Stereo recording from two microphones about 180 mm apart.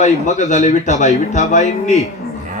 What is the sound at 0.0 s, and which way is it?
Speech, 40° left (ahead or behind).